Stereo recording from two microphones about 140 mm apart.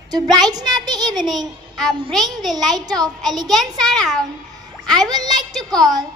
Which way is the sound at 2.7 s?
30° right (ahead or behind).